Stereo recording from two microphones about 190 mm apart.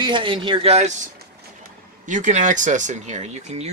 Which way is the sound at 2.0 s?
40° right (ahead or behind).